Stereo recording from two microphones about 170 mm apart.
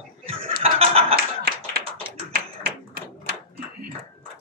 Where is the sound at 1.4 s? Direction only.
60° right (ahead or behind).